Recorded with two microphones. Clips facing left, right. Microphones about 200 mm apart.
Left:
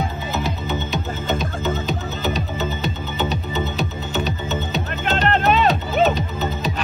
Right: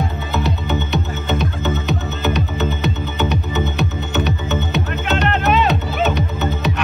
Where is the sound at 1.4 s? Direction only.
60° right (ahead or behind).